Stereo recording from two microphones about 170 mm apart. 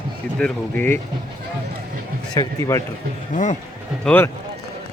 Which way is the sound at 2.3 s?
20° left (ahead or behind).